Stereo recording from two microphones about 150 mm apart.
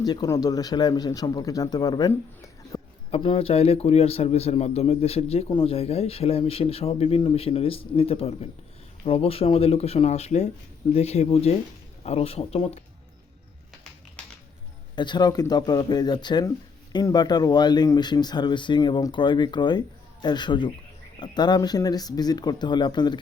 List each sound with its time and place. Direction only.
0.0 s speech: 25° left (ahead or behind)
2.7 s a sound: 20° left (ahead or behind)
3.1 s a man's voice: 40° left (ahead or behind)
14.9 s a man's voice: 30° left (ahead or behind)